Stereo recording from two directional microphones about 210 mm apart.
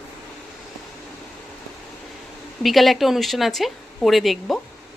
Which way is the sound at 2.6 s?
Centre (ahead or behind).